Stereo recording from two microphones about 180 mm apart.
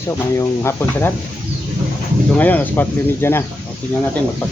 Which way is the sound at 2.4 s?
10° left (ahead or behind).